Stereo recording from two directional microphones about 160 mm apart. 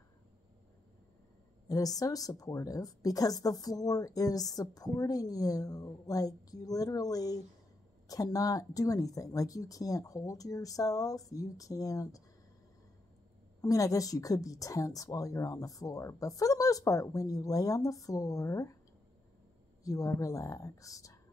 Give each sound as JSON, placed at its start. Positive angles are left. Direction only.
{"t": 1.7, "sound": "a woman's voice", "side_deg": 20}
{"t": 13.6, "sound": "a woman's voice", "side_deg": 20}
{"t": 19.8, "sound": "a woman's voice", "side_deg": 20}